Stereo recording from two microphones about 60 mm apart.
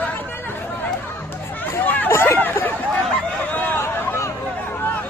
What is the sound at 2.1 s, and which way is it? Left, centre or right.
Hubbub, left.